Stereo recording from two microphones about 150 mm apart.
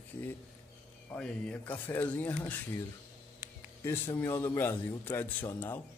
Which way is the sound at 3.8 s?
15° left (ahead or behind).